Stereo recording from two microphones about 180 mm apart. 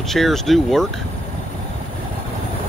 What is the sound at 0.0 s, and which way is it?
Speech, centre (ahead or behind).